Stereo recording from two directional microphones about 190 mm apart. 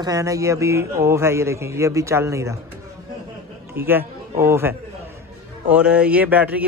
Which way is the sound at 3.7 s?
10° right (ahead or behind).